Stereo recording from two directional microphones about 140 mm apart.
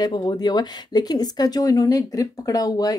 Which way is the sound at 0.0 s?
30° left (ahead or behind).